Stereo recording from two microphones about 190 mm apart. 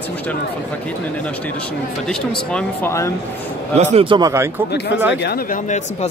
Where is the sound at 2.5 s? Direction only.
5° left (ahead or behind).